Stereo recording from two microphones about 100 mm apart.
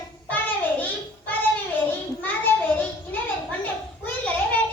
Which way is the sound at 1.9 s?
20° left (ahead or behind).